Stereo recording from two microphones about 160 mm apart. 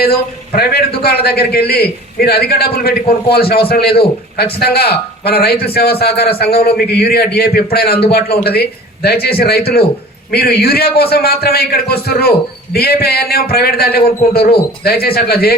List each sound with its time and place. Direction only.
0.0 s a man's voice: 80° left